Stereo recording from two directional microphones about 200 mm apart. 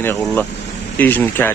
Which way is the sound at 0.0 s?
10° left (ahead or behind).